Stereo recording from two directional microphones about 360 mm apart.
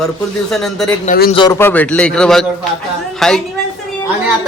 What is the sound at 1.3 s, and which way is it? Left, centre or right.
A man's voice, centre.